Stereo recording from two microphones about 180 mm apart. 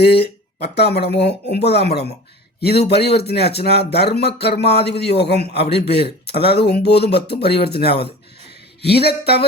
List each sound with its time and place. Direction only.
0.0 s speech: 65° left (ahead or behind)